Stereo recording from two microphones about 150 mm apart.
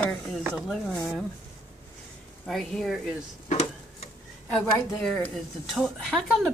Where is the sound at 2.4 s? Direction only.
5° left (ahead or behind).